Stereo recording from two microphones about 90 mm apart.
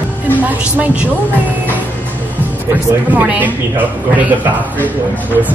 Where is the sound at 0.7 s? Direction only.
20° right (ahead or behind).